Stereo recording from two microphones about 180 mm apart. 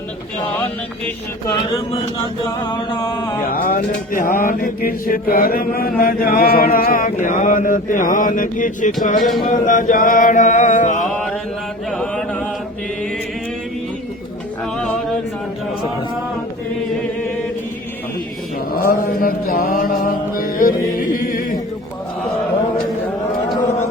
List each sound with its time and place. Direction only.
2.5 s a sound: 25° left (ahead or behind)
3.4 s mantra: 50° left (ahead or behind)
11.9 s chant: 5° left (ahead or behind)
14.6 s music: 5° left (ahead or behind)
18.7 s mantra: 50° left (ahead or behind)